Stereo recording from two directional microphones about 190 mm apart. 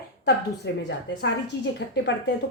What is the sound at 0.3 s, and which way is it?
A woman's voice, 65° left (ahead or behind).